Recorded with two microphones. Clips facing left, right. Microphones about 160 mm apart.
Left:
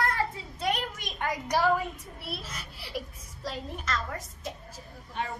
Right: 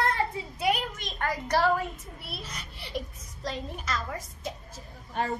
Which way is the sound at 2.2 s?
Centre (ahead or behind).